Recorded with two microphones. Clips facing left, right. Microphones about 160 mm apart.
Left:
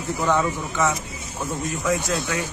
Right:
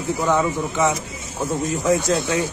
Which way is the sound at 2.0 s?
25° right (ahead or behind).